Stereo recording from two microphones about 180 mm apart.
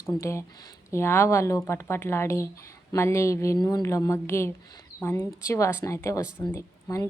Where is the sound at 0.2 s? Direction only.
15° left (ahead or behind).